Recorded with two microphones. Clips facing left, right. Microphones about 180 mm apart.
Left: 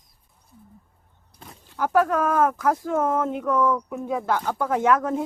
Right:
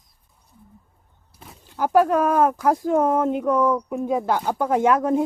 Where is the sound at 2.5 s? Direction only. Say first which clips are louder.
Right 3 dB; 30° right (ahead or behind).